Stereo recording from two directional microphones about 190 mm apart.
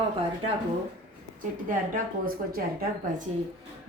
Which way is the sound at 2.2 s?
50° right (ahead or behind).